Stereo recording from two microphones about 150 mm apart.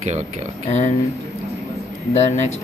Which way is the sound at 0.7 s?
50° left (ahead or behind).